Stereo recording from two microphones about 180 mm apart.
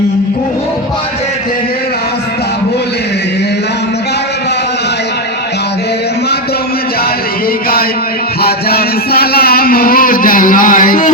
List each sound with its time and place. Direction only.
8.4 s music: 60° left (ahead or behind)